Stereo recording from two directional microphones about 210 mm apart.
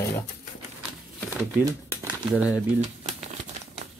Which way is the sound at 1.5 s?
10° right (ahead or behind).